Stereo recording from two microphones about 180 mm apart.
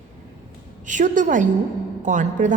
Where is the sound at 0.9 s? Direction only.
45° right (ahead or behind).